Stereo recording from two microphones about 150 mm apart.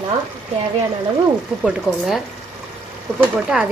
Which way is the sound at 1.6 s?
5° right (ahead or behind).